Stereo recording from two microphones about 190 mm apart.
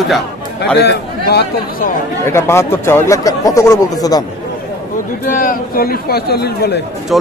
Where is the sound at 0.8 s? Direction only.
60° left (ahead or behind).